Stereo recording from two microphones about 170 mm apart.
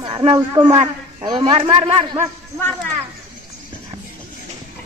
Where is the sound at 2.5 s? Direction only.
5° left (ahead or behind).